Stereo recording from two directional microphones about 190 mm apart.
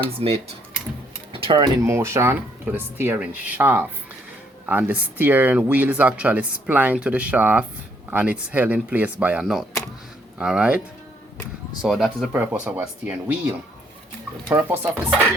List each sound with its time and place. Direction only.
0.2 s speech: 30° right (ahead or behind); by 10.8 s 5° right (ahead or behind)
11.8 s speech: centre (ahead or behind)
14.5 s speech: 10° right (ahead or behind)